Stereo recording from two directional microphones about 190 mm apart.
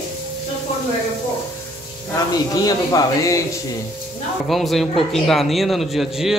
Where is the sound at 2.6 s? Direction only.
20° left (ahead or behind).